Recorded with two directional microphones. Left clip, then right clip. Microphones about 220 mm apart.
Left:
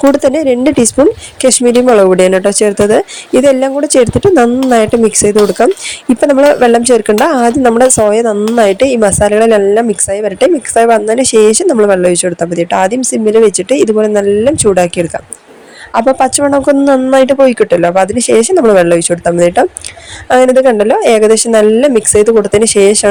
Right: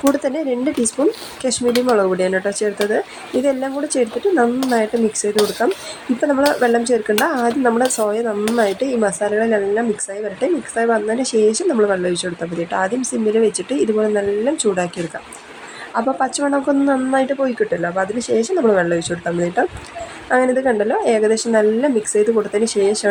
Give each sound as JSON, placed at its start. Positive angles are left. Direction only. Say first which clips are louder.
{"t": 0.1, "sound": "a woman's voice", "louder": "left 10 dB", "side_deg": 45}